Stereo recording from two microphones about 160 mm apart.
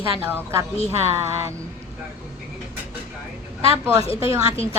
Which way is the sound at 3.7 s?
15° right (ahead or behind).